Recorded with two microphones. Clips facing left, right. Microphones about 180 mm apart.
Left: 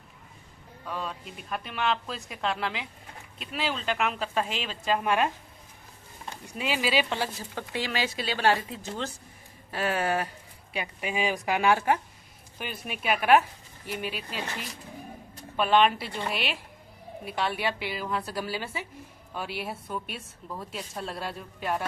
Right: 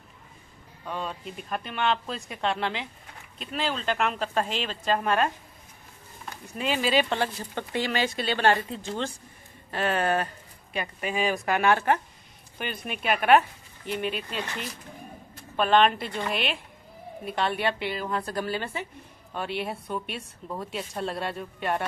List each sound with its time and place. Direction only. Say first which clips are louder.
0.8 s speech: right 2 dB; centre (ahead or behind)
6.4 s speech: right 2 dB; 5° left (ahead or behind)